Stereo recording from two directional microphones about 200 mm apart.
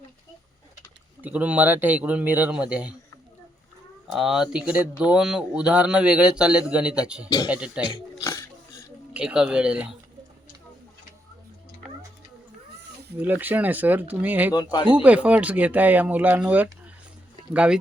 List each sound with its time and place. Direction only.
1.2 s speech: 5° right (ahead or behind)
4.1 s speech: centre (ahead or behind)
8.2 s dog: 15° left (ahead or behind)
9.1 s speech: 5° right (ahead or behind)
13.1 s speech: 10° right (ahead or behind)
14.5 s speech: 20° left (ahead or behind)
14.8 s speech: 5° right (ahead or behind)